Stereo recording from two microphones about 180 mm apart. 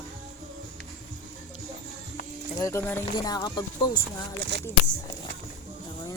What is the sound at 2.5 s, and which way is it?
Cricket, 15° left (ahead or behind).